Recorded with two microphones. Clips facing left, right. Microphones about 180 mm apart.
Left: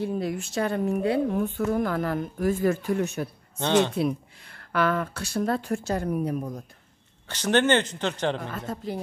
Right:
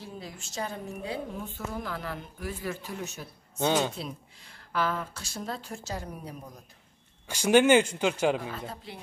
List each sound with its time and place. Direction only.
0.0 s a woman's voice: 60° left (ahead or behind)
3.5 s speech: 10° right (ahead or behind)
3.9 s a woman's voice: 60° left (ahead or behind)
7.2 s speech: 10° right (ahead or behind)
8.5 s speech: 45° left (ahead or behind)